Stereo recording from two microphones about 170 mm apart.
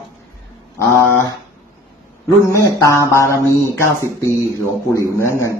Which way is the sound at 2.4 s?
15° left (ahead or behind).